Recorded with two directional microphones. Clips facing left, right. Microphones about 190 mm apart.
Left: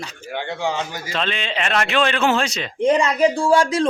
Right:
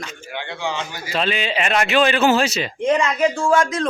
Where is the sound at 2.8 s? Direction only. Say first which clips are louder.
Left 2 dB; 35° left (ahead or behind).